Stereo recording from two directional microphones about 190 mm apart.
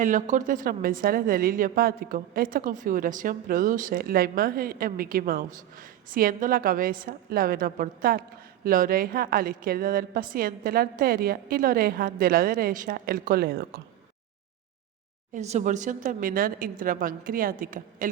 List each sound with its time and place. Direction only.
0.0 s a woman's voice: 40° right (ahead or behind)
15.3 s a woman's voice: 40° right (ahead or behind)